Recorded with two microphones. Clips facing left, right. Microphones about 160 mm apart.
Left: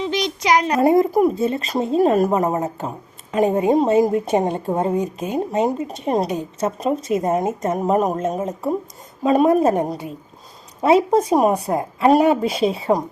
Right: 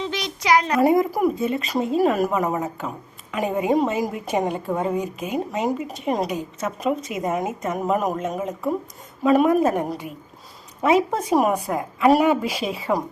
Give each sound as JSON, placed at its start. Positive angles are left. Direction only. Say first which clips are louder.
{"t": 0.0, "sound": "a child's voice", "louder": "left 5 dB", "side_deg": 15}
{"t": 3.8, "sound": "a child's voice", "louder": "left 6 dB", "side_deg": 25}